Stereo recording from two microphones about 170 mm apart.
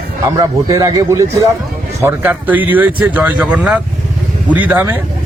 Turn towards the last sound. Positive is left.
turn(degrees=-10)  # may be behind; listen again after turning